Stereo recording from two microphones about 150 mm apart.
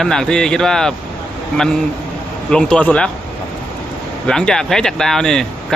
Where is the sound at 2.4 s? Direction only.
5° left (ahead or behind).